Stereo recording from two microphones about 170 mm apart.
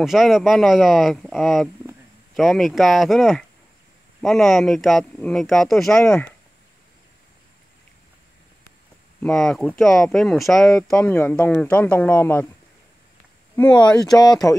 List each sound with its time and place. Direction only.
0.0 s speech: centre (ahead or behind)
9.2 s speech: 5° left (ahead or behind)
13.6 s speech: 10° left (ahead or behind)
13.9 s speech: 20° left (ahead or behind)